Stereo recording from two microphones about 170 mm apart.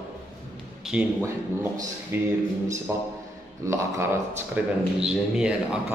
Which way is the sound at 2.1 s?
15° right (ahead or behind).